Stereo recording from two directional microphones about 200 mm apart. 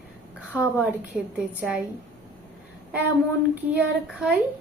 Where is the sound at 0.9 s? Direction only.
5° right (ahead or behind).